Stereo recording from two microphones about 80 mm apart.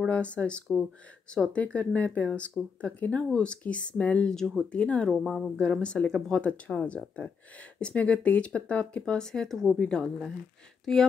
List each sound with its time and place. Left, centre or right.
0.0 s speech: centre
5.2 s speech: centre
7.8 s speech: centre